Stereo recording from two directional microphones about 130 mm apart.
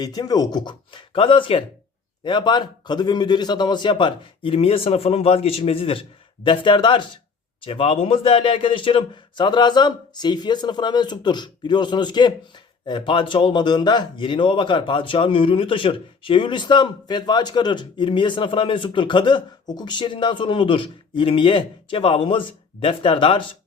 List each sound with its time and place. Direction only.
0.0 s a man's voice: 30° left (ahead or behind)